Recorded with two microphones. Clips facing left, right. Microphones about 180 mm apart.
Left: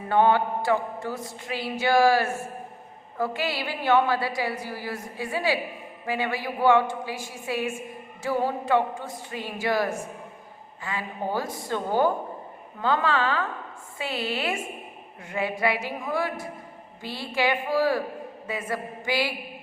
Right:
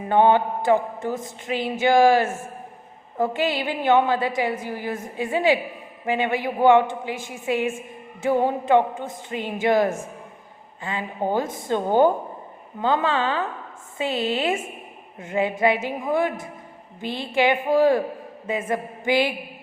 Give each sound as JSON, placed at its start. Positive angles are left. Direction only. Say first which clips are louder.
{"t": 0.1, "sound": "mantra", "louder": "right 3 dB", "side_deg": -20}